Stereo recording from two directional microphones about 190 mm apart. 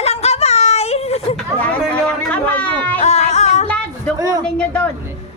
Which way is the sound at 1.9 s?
5° left (ahead or behind).